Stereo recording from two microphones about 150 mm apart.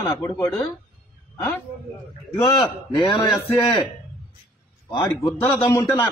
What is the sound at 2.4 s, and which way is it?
Speech, 30° left (ahead or behind).